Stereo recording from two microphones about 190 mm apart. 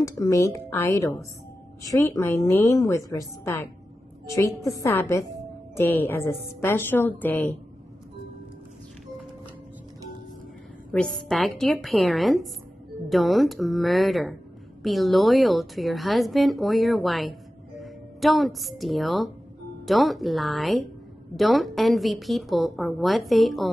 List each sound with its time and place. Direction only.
0.0 s a woman's voice: 15° left (ahead or behind)
4.8 s a woman's voice: 15° left (ahead or behind)
10.9 s a woman's voice: 5° left (ahead or behind)